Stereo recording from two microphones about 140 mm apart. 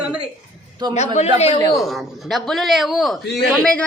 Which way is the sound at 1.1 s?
50° left (ahead or behind).